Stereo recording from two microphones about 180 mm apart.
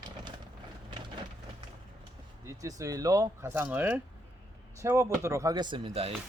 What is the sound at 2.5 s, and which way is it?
Speech, 20° right (ahead or behind).